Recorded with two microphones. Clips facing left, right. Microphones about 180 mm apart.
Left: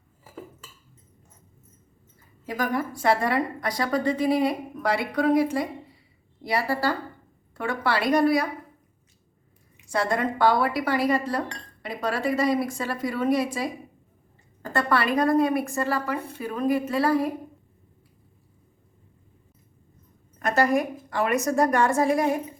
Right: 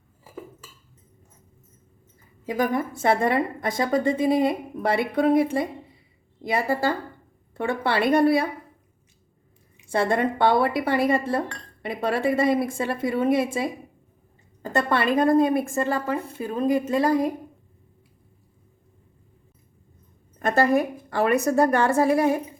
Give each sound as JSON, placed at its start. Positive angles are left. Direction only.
{"t": 2.5, "sound": "a woman's voice", "side_deg": -20}
{"t": 9.9, "sound": "a woman's voice", "side_deg": -25}
{"t": 20.4, "sound": "a woman's voice", "side_deg": -30}